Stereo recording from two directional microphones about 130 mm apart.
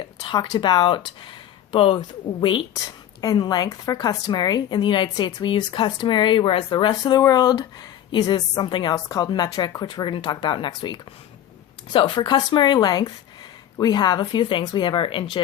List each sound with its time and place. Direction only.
0.2 s a woman's voice: 35° left (ahead or behind)